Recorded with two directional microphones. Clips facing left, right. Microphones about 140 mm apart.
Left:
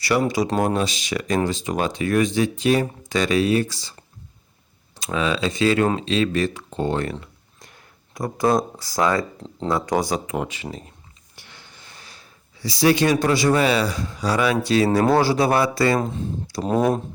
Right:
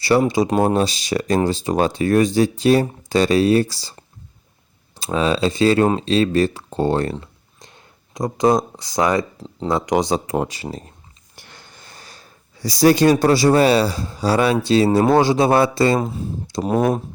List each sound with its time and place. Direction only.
0.0 s speech: 25° right (ahead or behind)
4.9 s speech: 30° right (ahead or behind)
10.2 s speech: 35° right (ahead or behind)
16.0 s speech: 10° right (ahead or behind)